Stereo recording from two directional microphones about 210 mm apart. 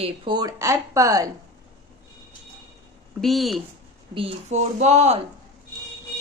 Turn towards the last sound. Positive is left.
turn(degrees=-30)  # may be behind; listen again after turning